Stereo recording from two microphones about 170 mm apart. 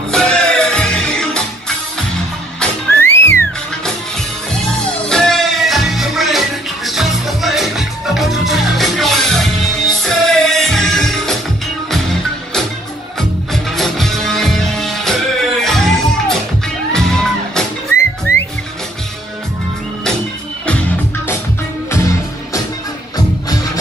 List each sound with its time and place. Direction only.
0.1 s music: 5° left (ahead or behind)
2.6 s music: 15° left (ahead or behind)
5.0 s music: 5° left (ahead or behind)
13.5 s music: centre (ahead or behind)
21.9 s music: 20° left (ahead or behind)